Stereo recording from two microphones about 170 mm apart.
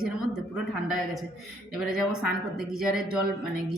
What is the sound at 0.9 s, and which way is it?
A woman's voice, centre (ahead or behind).